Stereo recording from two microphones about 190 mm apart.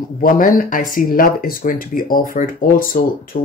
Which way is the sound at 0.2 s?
45° left (ahead or behind).